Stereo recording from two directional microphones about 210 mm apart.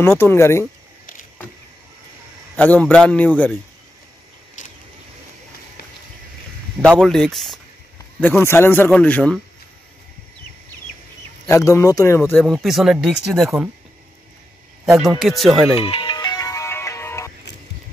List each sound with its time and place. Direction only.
0.0 s a man's voice: 10° left (ahead or behind)
2.5 s a man's voice: 5° left (ahead or behind)
4.6 s vehicle: 35° left (ahead or behind)
7.0 s a man's voice: centre (ahead or behind)
11.4 s a man's voice: 15° left (ahead or behind)
12.4 s speech: centre (ahead or behind)
15.1 s speech: centre (ahead or behind)
15.7 s music: 25° left (ahead or behind)